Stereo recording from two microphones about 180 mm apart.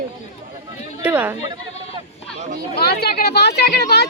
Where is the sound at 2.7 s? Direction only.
60° left (ahead or behind).